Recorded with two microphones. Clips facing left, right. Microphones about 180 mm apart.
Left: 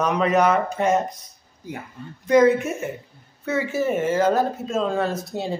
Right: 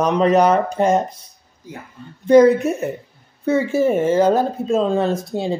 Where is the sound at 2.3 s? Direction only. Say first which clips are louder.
Right 5 dB; 35° right (ahead or behind).